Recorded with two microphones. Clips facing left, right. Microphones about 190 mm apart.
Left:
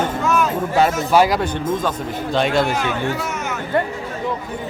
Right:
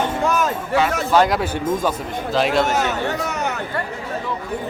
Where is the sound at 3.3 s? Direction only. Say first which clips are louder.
Right 2 dB; 35° right (ahead or behind).